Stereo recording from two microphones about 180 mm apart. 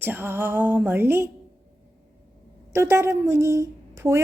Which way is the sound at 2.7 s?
15° right (ahead or behind).